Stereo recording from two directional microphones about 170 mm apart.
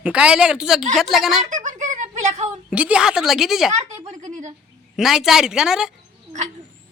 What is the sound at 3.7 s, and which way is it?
Speech, 40° right (ahead or behind).